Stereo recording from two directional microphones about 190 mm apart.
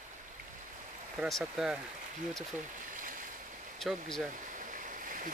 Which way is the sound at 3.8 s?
Centre (ahead or behind).